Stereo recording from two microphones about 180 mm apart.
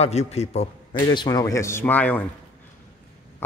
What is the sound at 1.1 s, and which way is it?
A man's voice, 20° left (ahead or behind).